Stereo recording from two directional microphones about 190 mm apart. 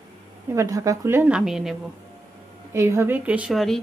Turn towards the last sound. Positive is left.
turn(degrees=0)  # may be behind; listen again after turning